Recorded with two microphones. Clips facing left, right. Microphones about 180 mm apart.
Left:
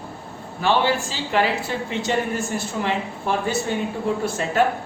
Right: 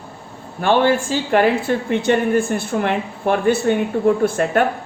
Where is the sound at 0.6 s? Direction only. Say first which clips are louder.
Right 5 dB; 50° right (ahead or behind).